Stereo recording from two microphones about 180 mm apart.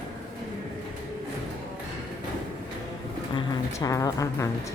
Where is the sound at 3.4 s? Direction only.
20° left (ahead or behind).